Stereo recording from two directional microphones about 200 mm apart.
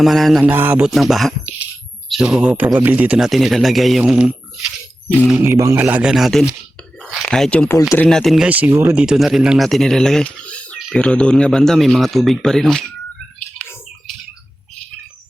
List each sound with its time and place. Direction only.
0.0 s speech: centre (ahead or behind)
7.0 s a sound: centre (ahead or behind)
7.8 s speech: 15° left (ahead or behind)
8.0 s speech: centre (ahead or behind)